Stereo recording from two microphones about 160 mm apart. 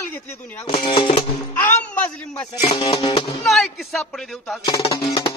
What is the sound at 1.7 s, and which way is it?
Speech, 10° left (ahead or behind).